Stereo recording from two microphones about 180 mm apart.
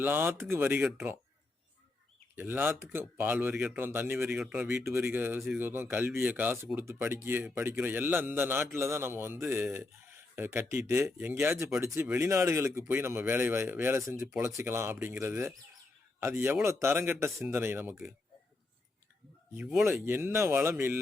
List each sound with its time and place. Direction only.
0.0 s speech: 10° right (ahead or behind)
2.3 s speech: 10° right (ahead or behind)
19.5 s speech: 5° right (ahead or behind)